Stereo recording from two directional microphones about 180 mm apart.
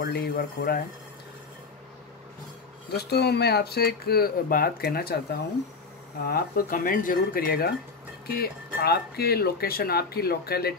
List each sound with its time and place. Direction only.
0.0 s speech: 60° left (ahead or behind)
2.9 s speech: 65° left (ahead or behind)